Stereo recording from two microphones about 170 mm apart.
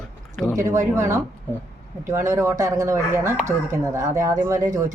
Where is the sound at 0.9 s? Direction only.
15° right (ahead or behind).